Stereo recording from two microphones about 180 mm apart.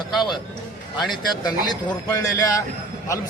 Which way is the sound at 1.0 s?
Centre (ahead or behind).